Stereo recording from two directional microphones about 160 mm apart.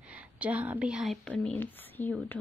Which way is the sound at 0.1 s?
10° right (ahead or behind).